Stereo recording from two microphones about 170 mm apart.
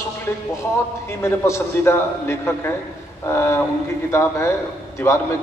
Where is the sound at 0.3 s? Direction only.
15° left (ahead or behind).